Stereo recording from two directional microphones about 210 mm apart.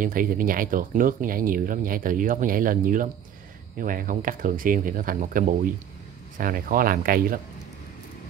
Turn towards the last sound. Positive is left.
turn(degrees=-45)  # may be behind; listen again after turning